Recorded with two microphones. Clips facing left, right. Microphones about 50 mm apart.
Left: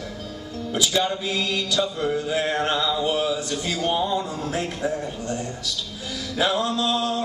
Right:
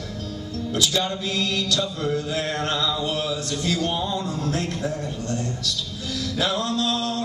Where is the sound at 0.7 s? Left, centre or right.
Centre.